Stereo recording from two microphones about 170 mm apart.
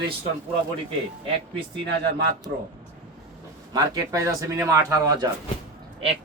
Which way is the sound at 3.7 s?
20° right (ahead or behind).